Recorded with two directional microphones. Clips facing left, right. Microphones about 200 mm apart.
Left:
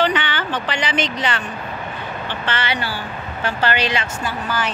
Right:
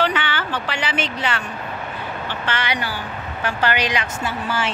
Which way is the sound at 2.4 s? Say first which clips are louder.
Left 1 dB; 10° right (ahead or behind).